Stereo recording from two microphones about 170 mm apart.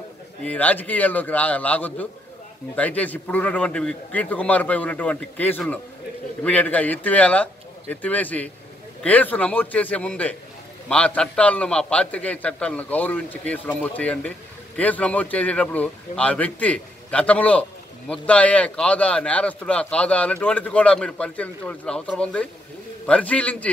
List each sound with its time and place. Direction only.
0.4 s a man's voice: 10° left (ahead or behind)